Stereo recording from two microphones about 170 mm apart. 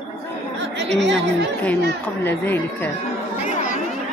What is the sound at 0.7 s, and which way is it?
Chatter, 90° right.